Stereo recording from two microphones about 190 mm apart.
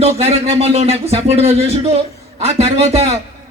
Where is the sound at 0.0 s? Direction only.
35° right (ahead or behind).